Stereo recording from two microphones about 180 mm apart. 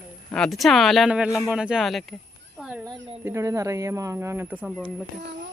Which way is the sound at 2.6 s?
5° right (ahead or behind).